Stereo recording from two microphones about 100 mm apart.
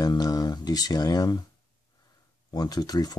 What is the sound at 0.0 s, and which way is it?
Speech, 40° left (ahead or behind).